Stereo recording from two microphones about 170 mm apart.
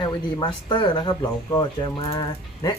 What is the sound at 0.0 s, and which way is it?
Speech, 25° left (ahead or behind).